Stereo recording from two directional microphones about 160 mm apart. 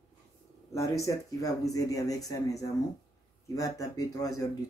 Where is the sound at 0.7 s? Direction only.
20° left (ahead or behind).